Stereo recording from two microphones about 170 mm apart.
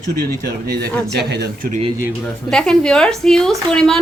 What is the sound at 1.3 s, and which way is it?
Speech, 75° right (ahead or behind).